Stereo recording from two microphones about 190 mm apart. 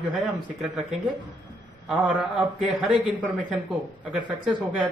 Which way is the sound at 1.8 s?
5° right (ahead or behind).